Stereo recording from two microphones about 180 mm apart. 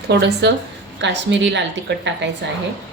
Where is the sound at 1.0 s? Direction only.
85° right.